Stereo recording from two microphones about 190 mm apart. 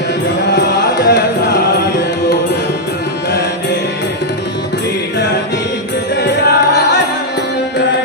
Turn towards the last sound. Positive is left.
turn(degrees=60)  # may be behind; listen again after turning